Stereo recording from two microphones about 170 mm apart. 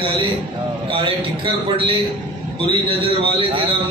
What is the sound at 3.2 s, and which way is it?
Speech, 30° right (ahead or behind).